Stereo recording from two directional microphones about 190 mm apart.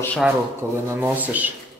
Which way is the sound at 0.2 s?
10° right (ahead or behind).